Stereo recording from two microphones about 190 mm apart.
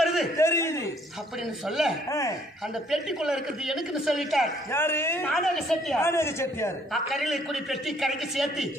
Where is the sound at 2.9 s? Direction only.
5° right (ahead or behind).